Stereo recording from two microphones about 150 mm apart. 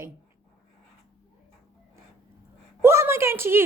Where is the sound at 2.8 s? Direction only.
15° right (ahead or behind).